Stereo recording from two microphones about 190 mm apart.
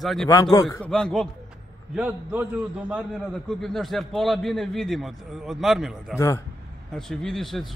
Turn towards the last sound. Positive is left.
turn(degrees=0)  # may be behind; listen again after turning